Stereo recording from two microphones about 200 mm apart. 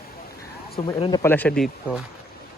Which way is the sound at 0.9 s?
25° left (ahead or behind).